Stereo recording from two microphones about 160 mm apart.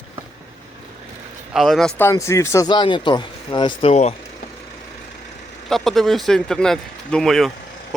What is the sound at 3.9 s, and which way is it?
Speech, 45° left (ahead or behind).